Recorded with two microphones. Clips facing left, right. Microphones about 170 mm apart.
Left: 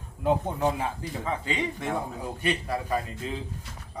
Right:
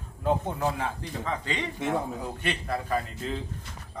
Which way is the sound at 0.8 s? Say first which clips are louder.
Left 1 dB; 10° left (ahead or behind).